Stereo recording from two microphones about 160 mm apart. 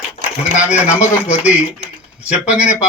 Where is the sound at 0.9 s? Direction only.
45° left (ahead or behind).